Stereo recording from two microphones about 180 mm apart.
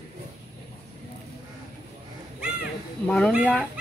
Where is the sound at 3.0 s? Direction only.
5° left (ahead or behind).